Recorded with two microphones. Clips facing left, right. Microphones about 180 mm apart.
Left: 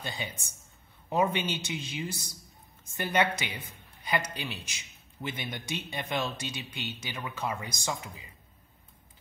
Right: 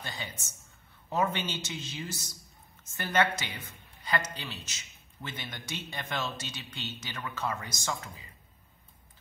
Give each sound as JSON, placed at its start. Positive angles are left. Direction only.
{"t": 0.0, "sound": "a man's voice", "side_deg": 15}